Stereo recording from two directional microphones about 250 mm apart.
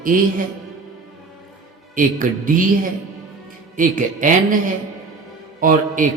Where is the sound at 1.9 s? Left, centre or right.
Right.